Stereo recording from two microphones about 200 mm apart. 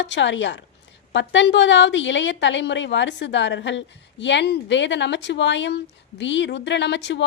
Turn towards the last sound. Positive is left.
turn(degrees=65)  # may be behind; listen again after turning